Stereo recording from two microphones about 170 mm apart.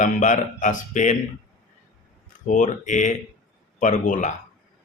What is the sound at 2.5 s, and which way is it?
Speech, 50° left (ahead or behind).